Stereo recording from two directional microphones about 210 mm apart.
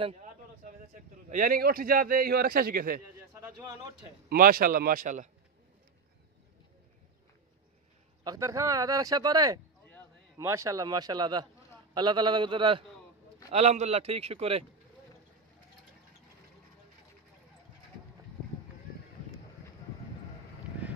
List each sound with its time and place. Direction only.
0.0 s a man's voice: 35° right (ahead or behind)
4.3 s speech: 45° right (ahead or behind)
8.2 s a man's voice: 15° right (ahead or behind)